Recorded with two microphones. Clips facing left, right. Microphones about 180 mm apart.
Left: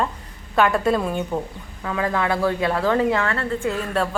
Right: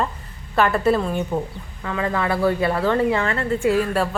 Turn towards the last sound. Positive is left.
turn(degrees=-5)  # may be behind; listen again after turning